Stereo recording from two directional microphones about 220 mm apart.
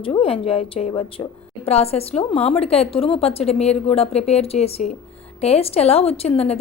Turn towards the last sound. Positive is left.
turn(degrees=30)  # may be behind; listen again after turning